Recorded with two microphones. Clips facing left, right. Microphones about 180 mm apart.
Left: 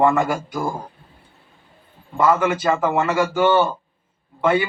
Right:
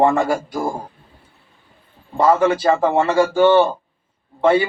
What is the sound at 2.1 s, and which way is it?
A man's voice, 30° right (ahead or behind).